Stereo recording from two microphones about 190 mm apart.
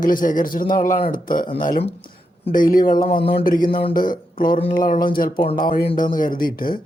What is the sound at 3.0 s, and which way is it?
Speech, 30° left (ahead or behind).